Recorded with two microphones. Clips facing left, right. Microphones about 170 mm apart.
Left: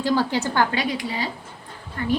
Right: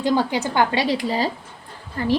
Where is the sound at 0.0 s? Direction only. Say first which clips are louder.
Right 1 dB; 15° right (ahead or behind); by 2.1 s 35° right (ahead or behind).